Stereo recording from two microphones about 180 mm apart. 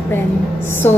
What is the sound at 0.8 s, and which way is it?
Speech, 15° left (ahead or behind).